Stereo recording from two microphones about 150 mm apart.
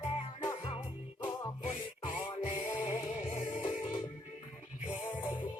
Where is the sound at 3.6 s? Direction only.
35° left (ahead or behind).